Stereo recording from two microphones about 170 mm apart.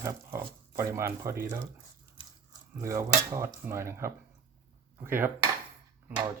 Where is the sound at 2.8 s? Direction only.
15° right (ahead or behind).